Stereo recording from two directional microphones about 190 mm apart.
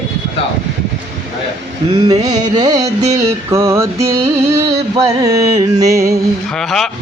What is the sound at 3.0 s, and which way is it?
Speech, 35° right (ahead or behind).